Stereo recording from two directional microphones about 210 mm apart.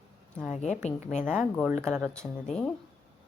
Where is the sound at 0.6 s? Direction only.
35° left (ahead or behind).